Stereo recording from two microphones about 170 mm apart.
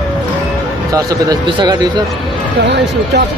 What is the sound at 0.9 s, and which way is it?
Speech, 20° right (ahead or behind).